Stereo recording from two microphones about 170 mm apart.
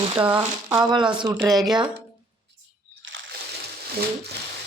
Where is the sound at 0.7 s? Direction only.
25° right (ahead or behind).